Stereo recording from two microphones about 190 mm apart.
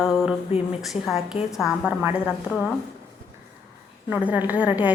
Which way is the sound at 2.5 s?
10° left (ahead or behind).